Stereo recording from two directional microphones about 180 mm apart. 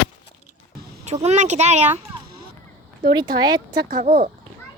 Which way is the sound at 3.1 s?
25° right (ahead or behind).